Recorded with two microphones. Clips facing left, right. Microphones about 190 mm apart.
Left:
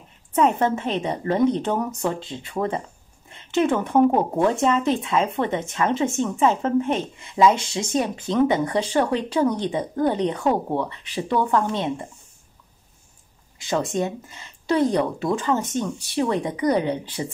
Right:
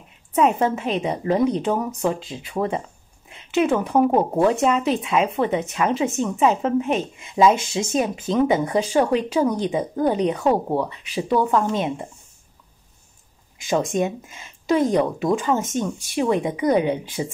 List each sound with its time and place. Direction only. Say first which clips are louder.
0.3 s speech: right 1 dB; 15° right (ahead or behind)
3.3 s a sound: right 1 dB; 10° right (ahead or behind)
3.7 s speech: even; centre (ahead or behind)
13.7 s speech: right 2 dB; 15° right (ahead or behind)